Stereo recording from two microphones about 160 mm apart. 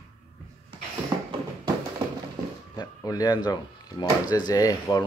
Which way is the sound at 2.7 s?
25° left (ahead or behind).